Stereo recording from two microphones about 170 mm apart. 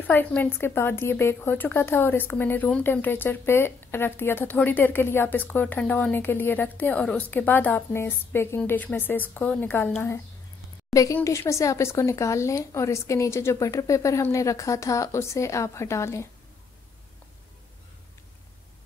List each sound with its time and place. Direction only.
0.0 s a woman's voice: 10° left (ahead or behind)
10.9 s a woman's voice: 20° left (ahead or behind)